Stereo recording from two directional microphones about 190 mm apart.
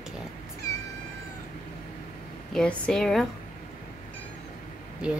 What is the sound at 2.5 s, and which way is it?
Speech, 5° left (ahead or behind).